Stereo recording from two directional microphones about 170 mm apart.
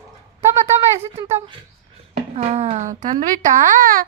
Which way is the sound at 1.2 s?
40° right (ahead or behind).